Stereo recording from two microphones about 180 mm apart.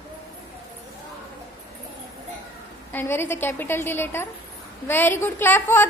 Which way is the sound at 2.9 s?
15° left (ahead or behind).